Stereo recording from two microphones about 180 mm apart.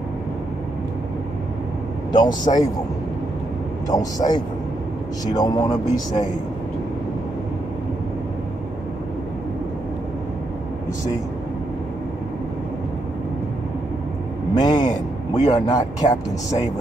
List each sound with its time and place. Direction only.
2.1 s speech: 20° left (ahead or behind)
3.9 s speech: 20° left (ahead or behind)
14.5 s a sound: 20° left (ahead or behind)
15.5 s speech: 20° left (ahead or behind)